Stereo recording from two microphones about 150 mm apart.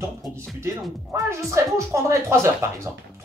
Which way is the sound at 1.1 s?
20° right (ahead or behind).